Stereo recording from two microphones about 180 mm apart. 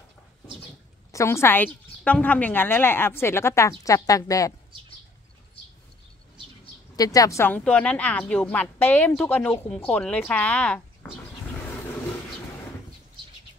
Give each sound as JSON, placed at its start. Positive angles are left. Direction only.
{"t": 1.1, "sound": "a woman's voice", "side_deg": 15}
{"t": 6.6, "sound": "a woman's voice", "side_deg": 20}